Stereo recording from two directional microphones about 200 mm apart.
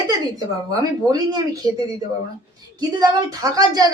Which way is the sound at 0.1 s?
15° right (ahead or behind).